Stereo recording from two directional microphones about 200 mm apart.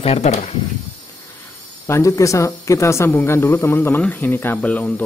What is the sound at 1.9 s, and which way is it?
Speech, 15° left (ahead or behind).